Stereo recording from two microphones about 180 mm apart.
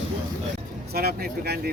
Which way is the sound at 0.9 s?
60° right (ahead or behind).